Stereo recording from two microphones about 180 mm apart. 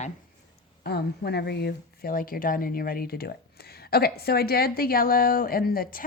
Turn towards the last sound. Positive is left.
turn(degrees=55)  # may be behind; listen again after turning